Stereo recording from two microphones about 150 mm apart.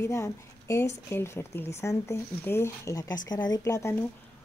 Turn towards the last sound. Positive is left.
turn(degrees=20)  # may be behind; listen again after turning